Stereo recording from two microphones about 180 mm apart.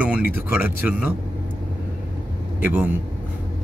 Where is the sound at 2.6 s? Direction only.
10° right (ahead or behind).